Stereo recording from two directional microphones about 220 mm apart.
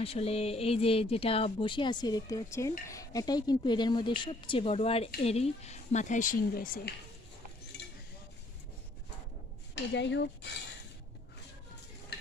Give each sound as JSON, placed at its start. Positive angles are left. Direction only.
{"t": 0.0, "sound": "speech", "side_deg": 25}
{"t": 9.9, "sound": "speech", "side_deg": 55}